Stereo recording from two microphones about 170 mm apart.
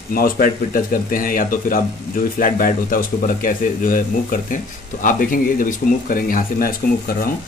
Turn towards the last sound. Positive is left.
turn(degrees=55)  # may be behind; listen again after turning